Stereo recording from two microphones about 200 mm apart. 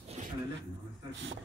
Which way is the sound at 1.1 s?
70° right (ahead or behind).